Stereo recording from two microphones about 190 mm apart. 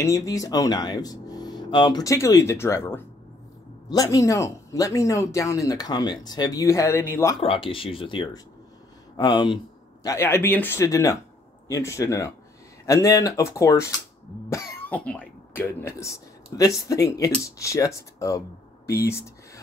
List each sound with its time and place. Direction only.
0.0 s speech: 15° left (ahead or behind)
7.3 s speech: 30° left (ahead or behind)